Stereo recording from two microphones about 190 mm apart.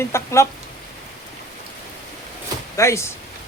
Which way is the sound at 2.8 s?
15° left (ahead or behind).